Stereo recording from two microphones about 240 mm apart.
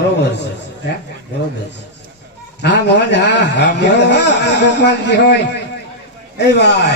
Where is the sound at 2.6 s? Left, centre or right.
Left.